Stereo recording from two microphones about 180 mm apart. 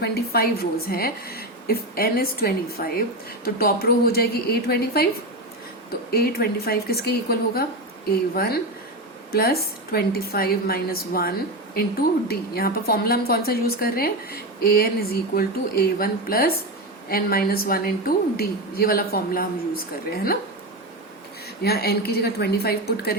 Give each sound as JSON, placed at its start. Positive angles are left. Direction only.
{"t": 0.0, "sound": "a woman's voice", "side_deg": 60}
{"t": 21.6, "sound": "a woman's voice", "side_deg": 60}